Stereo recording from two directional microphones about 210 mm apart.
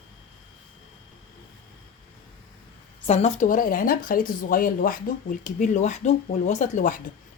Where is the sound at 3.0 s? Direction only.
30° left (ahead or behind).